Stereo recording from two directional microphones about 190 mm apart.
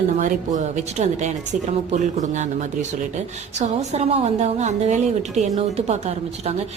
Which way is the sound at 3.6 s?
35° right (ahead or behind).